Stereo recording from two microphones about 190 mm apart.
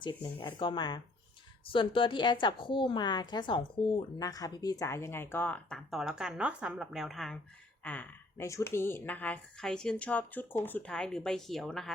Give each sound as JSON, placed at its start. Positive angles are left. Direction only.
{"t": 0.0, "sound": "a woman's voice", "side_deg": 25}
{"t": 7.9, "sound": "a woman's voice", "side_deg": 10}